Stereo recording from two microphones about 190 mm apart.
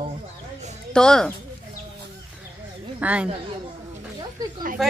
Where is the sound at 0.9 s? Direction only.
5° left (ahead or behind).